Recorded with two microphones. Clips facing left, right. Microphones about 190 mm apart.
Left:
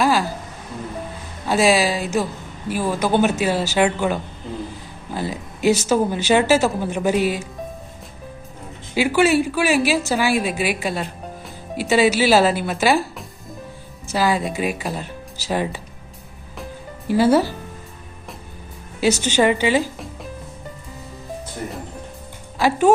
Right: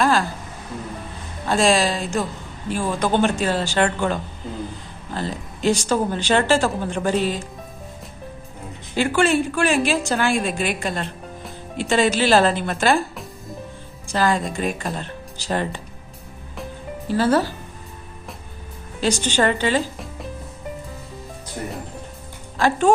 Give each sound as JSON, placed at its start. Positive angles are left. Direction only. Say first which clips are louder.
{"t": 0.0, "sound": "a sound", "louder": "left 1 dB", "side_deg": 5}
{"t": 1.5, "sound": "speech", "louder": "left 1 dB", "side_deg": 5}
{"t": 9.0, "sound": "a woman's voice", "louder": "left 2 dB", "side_deg": 5}
{"t": 17.1, "sound": "speech", "louder": "left 3 dB", "side_deg": 10}
{"t": 18.9, "sound": "speech", "louder": "left 3 dB", "side_deg": 10}
{"t": 22.5, "sound": "speech", "louder": "left 2 dB", "side_deg": 10}